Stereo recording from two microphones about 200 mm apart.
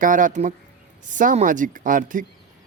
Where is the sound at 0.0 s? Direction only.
40° right (ahead or behind).